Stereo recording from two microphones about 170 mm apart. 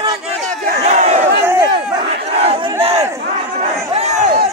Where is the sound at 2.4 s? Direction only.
35° right (ahead or behind).